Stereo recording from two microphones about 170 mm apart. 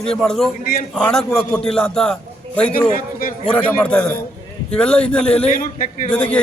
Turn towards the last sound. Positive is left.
turn(degrees=5)  # may be behind; listen again after turning